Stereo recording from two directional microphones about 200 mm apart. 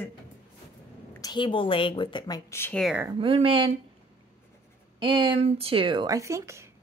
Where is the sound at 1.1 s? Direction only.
20° left (ahead or behind).